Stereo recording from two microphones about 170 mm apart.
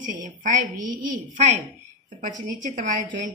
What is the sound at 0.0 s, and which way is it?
Speech, 50° right (ahead or behind).